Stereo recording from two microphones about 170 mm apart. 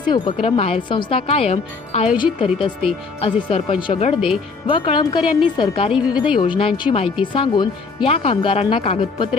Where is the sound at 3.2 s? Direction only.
35° left (ahead or behind).